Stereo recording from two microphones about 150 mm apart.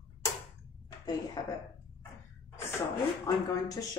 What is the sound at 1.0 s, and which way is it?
Speech, 30° left (ahead or behind).